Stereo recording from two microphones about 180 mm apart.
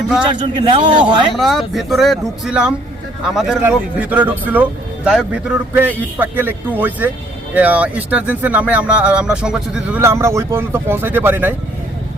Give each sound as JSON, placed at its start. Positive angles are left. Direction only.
{"t": 0.3, "sound": "a man's voice", "side_deg": -25}
{"t": 1.4, "sound": "speech", "side_deg": 0}
{"t": 10.0, "sound": "speech", "side_deg": -15}